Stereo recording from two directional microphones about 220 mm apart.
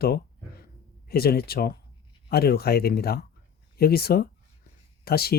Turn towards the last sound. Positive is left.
turn(degrees=45)  # may be behind; listen again after turning